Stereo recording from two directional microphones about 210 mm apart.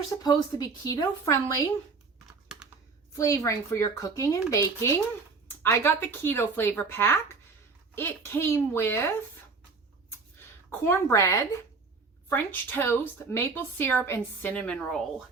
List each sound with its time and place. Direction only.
0.2 s a woman's voice: 20° left (ahead or behind)
3.2 s a woman's voice: 15° left (ahead or behind)
10.7 s a woman's voice: 10° left (ahead or behind)